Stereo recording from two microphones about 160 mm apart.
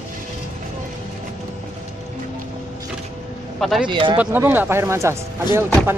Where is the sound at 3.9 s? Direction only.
30° right (ahead or behind).